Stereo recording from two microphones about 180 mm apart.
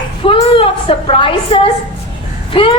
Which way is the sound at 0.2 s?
30° left (ahead or behind).